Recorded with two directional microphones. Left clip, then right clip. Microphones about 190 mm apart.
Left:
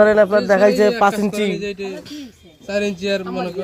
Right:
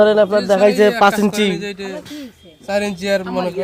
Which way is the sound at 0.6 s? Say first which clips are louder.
Right 2 dB; 25° right (ahead or behind).